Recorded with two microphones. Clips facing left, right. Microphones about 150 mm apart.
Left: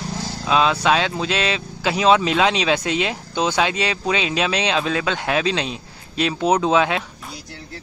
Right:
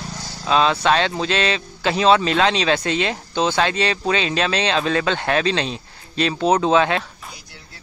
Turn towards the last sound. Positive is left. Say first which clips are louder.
# right 1 dB
turn(degrees=5)  # may be behind; listen again after turning